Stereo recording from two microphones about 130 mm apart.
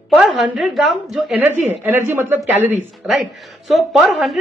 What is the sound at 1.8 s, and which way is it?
Speech, 15° right (ahead or behind).